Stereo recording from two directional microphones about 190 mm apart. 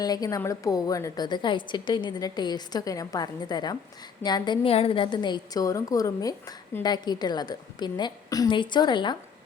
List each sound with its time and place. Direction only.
0.0 s a woman's voice: 20° left (ahead or behind)